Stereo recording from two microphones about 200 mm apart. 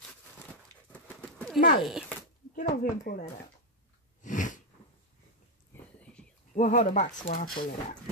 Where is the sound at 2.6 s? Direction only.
45° left (ahead or behind).